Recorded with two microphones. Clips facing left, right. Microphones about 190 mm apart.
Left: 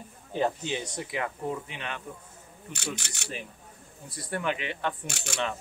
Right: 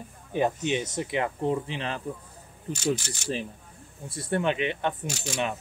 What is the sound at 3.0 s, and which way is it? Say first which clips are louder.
Speech: right 5 dB; 65° left (ahead or behind).